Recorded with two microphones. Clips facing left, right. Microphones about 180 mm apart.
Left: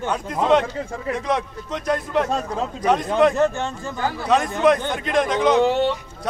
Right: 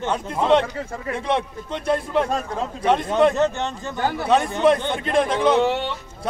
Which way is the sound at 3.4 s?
20° right (ahead or behind).